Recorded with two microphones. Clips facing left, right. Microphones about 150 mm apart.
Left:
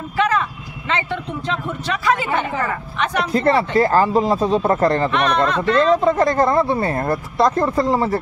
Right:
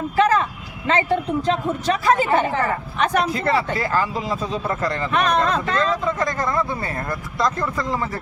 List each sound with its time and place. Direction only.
0.2 s speech: 35° right (ahead or behind)
3.3 s speech: 40° left (ahead or behind)